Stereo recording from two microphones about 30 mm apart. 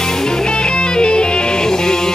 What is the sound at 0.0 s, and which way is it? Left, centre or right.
Music, centre.